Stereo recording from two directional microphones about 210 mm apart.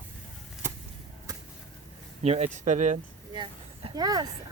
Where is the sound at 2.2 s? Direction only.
30° right (ahead or behind).